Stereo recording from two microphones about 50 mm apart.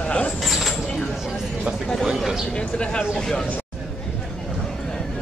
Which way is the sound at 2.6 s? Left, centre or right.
Centre.